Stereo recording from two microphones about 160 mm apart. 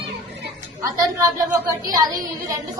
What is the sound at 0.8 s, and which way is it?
Speech, 20° right (ahead or behind).